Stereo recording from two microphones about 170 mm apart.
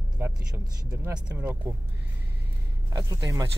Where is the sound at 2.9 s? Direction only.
20° right (ahead or behind).